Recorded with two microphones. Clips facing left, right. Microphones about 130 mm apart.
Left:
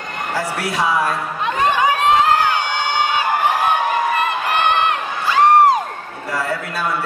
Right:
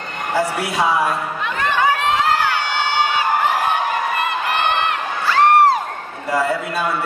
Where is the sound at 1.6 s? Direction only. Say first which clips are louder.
Left 2 dB; 15° left (ahead or behind).